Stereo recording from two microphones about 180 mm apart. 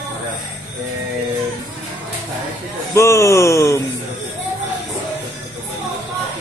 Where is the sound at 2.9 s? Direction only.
15° left (ahead or behind).